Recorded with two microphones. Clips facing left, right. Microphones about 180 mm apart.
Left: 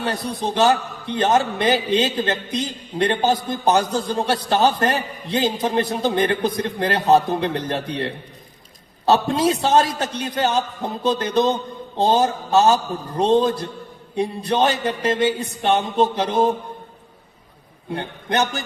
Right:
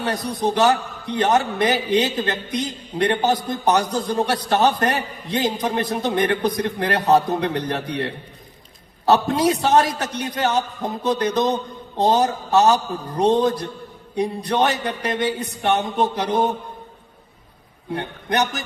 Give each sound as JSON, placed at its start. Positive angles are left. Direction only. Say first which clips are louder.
{"t": 0.0, "sound": "a man's voice", "louder": "right 2 dB", "side_deg": 25}
{"t": 17.9, "sound": "a man's voice", "louder": "even", "side_deg": 25}